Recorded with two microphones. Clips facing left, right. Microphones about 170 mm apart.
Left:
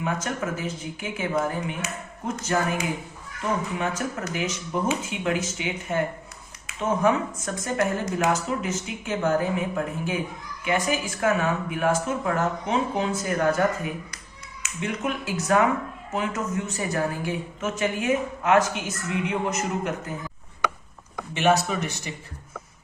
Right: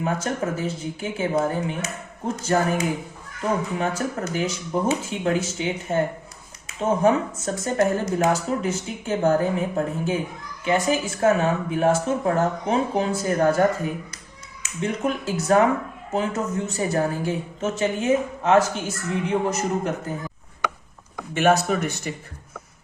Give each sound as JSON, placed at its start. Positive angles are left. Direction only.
{"t": 0.0, "sound": "speech", "side_deg": -35}
{"t": 3.8, "sound": "a woman's voice", "side_deg": -30}
{"t": 21.3, "sound": "speech", "side_deg": -45}